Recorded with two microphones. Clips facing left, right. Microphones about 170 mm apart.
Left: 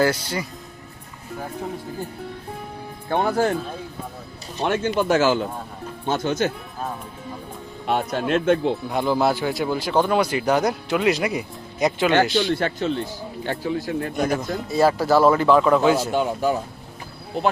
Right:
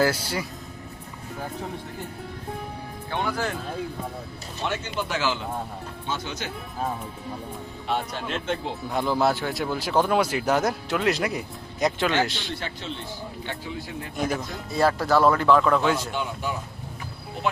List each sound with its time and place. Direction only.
0.0 s speech: 5° right (ahead or behind)
3.1 s speech: 45° left (ahead or behind)
4.6 s speech: 50° left (ahead or behind)
7.9 s speech: 55° left (ahead or behind)
8.9 s speech: centre (ahead or behind)
12.5 s speech: 50° left (ahead or behind)
14.3 s speech: centre (ahead or behind)
16.1 s speech: 40° left (ahead or behind)